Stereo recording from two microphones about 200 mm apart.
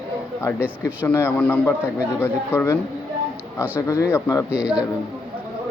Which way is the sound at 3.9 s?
15° left (ahead or behind).